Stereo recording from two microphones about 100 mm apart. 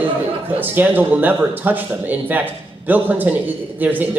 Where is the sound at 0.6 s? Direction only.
20° right (ahead or behind).